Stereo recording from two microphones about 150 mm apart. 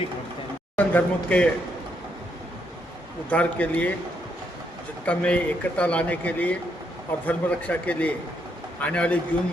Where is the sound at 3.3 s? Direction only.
10° left (ahead or behind).